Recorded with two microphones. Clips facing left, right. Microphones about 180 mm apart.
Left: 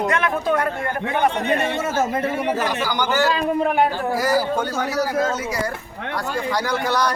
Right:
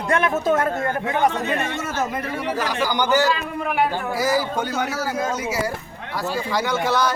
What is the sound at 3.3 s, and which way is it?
Speech, 35° left (ahead or behind).